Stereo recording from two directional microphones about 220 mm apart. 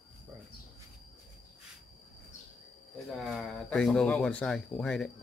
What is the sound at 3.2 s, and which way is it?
Speech, centre (ahead or behind).